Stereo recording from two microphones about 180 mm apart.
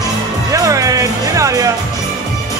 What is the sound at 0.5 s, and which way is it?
Music, 20° right (ahead or behind).